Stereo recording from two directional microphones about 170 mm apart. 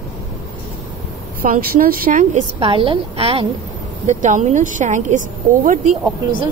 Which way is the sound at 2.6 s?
30° right (ahead or behind).